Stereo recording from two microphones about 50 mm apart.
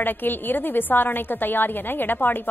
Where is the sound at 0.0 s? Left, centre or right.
Left.